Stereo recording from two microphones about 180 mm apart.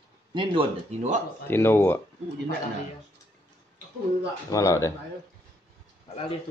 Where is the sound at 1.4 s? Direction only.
15° left (ahead or behind).